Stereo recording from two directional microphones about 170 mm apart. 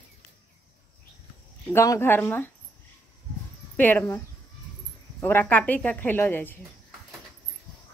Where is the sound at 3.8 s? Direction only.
10° left (ahead or behind).